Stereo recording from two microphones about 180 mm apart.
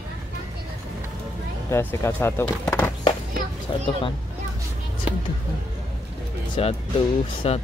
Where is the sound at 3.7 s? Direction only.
25° left (ahead or behind).